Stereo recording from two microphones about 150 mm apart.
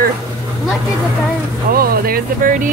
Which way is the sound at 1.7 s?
80° right.